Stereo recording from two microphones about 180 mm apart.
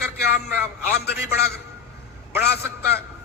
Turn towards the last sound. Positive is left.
turn(degrees=60)  # may be behind; listen again after turning